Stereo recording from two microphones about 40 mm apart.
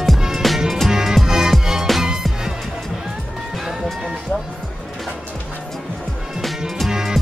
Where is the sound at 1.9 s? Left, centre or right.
Centre.